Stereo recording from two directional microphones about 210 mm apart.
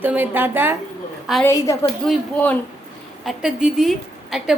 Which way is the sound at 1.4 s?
15° left (ahead or behind).